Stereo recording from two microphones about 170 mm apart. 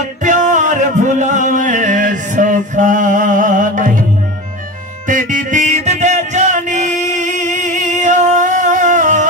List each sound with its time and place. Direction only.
0.2 s music: 50° right (ahead or behind)
5.0 s music: 50° right (ahead or behind)